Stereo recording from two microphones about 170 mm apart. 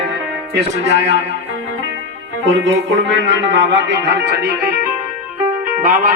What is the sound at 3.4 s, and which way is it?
Music, 90° right.